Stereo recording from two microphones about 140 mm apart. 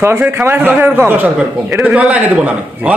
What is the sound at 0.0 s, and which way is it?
A man's voice, 15° right (ahead or behind).